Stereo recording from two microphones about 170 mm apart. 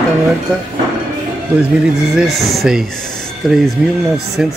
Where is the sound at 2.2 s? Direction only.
Centre (ahead or behind).